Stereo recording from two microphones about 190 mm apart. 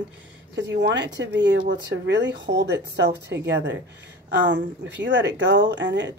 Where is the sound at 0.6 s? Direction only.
65° right (ahead or behind).